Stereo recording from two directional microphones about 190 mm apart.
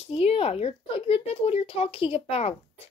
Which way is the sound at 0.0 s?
30° left (ahead or behind).